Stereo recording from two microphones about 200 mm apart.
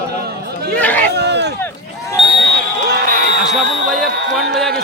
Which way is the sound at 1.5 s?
10° left (ahead or behind).